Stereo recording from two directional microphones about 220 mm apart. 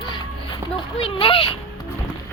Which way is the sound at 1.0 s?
25° left (ahead or behind).